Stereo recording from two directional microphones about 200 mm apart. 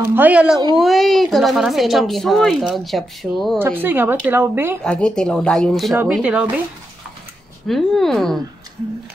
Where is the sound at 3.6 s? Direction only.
10° right (ahead or behind).